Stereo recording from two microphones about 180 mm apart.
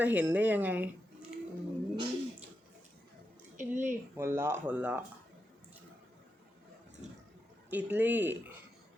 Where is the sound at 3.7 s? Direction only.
15° right (ahead or behind).